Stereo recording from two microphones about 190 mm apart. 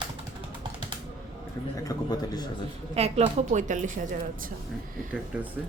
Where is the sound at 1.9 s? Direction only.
20° left (ahead or behind).